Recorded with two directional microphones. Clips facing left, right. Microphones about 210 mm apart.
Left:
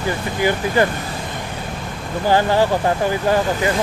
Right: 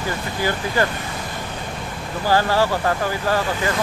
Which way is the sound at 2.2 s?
20° left (ahead or behind).